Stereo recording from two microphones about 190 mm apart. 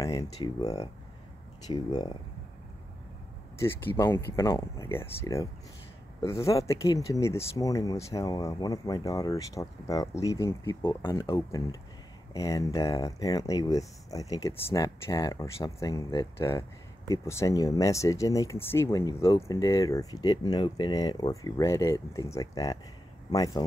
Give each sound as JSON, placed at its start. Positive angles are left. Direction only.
{"t": 0.0, "sound": "speech", "side_deg": 20}
{"t": 3.5, "sound": "speech", "side_deg": 10}